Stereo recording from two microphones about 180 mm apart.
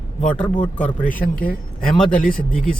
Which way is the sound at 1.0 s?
50° left (ahead or behind).